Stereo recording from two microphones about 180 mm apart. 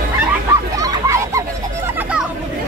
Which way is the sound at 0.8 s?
15° right (ahead or behind).